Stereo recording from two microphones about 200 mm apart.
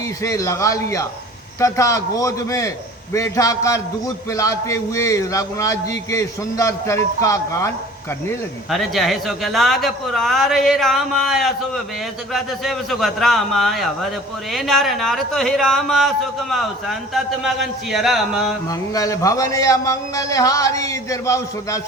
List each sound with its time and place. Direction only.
0.2 s a man's voice: 15° left (ahead or behind)
8.7 s a man's voice: centre (ahead or behind)
18.7 s a man's voice: 15° left (ahead or behind)